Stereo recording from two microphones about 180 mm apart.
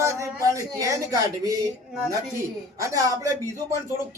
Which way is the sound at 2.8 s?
15° right (ahead or behind).